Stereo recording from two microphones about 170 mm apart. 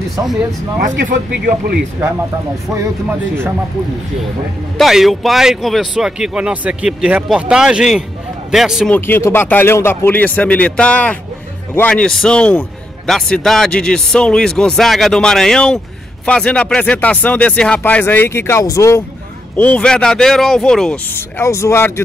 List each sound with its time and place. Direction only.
0.7 s speech: 55° right (ahead or behind)
2.0 s speech: 15° right (ahead or behind)
4.7 s a man's voice: centre (ahead or behind)
8.9 s a man's voice: 10° left (ahead or behind)